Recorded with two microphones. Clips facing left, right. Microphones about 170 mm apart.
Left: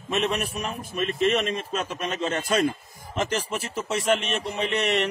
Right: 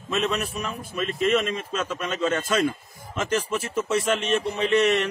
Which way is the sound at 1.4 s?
30° left (ahead or behind).